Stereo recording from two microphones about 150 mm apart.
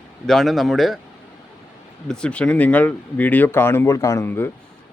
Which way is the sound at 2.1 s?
5° left (ahead or behind).